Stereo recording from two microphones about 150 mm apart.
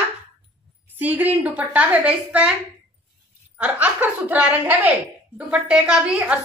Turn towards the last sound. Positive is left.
turn(degrees=-10)  # may be behind; listen again after turning